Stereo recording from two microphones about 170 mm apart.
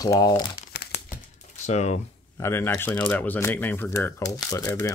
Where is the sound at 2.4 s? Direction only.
15° left (ahead or behind).